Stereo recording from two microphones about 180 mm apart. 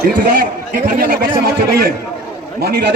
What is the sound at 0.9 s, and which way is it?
Speech, 55° right (ahead or behind).